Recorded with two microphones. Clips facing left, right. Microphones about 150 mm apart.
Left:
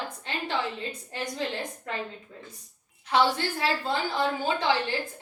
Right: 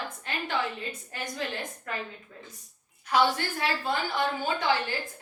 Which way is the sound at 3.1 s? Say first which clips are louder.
Left 1 dB; 25° left (ahead or behind).